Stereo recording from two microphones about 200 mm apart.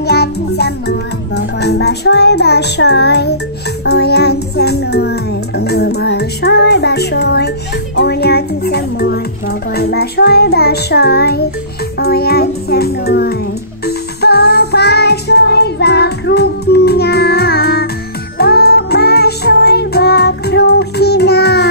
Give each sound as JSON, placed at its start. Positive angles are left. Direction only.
{"t": 0.0, "sound": "music", "side_deg": 55}